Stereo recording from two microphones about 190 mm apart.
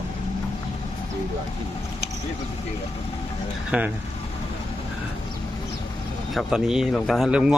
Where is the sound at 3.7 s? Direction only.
5° right (ahead or behind).